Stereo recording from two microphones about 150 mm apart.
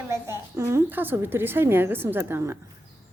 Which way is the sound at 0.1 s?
20° right (ahead or behind).